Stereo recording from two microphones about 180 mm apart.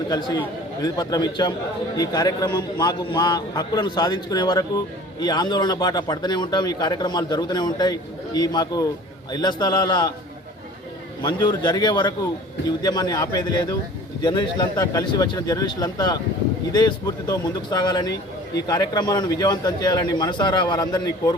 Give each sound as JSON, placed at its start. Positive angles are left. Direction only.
{"t": 0.1, "sound": "speech", "side_deg": 25}
{"t": 11.2, "sound": "speech", "side_deg": 25}